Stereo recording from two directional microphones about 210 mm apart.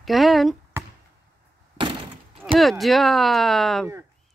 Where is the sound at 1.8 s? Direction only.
25° right (ahead or behind).